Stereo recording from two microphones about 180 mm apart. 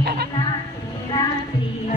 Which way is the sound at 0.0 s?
60° right (ahead or behind).